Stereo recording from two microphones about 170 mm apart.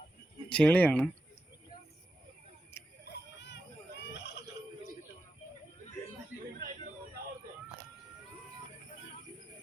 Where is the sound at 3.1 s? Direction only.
90° left.